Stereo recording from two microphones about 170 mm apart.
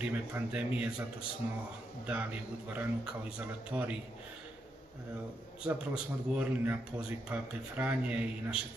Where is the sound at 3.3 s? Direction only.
5° right (ahead or behind).